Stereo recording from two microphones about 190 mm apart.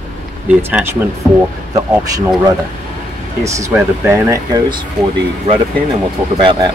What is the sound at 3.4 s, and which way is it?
Speech, 15° right (ahead or behind).